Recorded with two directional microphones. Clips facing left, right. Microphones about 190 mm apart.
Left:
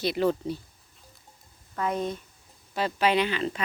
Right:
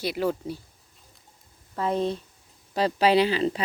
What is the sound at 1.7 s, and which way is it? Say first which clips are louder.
Speech: right 3 dB; 30° right (ahead or behind).